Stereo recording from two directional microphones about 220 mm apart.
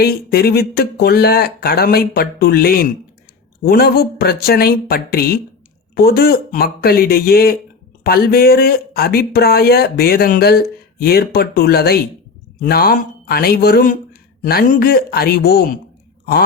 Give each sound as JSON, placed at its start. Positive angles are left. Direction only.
{"t": 0.0, "sound": "speech", "side_deg": 45}